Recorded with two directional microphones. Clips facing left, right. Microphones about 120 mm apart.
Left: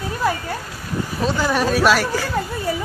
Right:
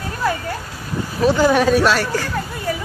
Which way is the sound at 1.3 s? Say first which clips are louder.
Right 7 dB; 15° right (ahead or behind).